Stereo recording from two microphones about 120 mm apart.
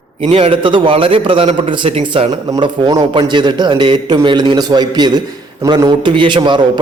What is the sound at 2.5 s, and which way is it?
A man's voice, 35° right (ahead or behind).